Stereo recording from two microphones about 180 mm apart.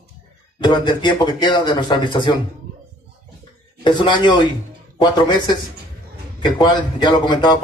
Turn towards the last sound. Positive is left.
turn(degrees=25)  # may be behind; listen again after turning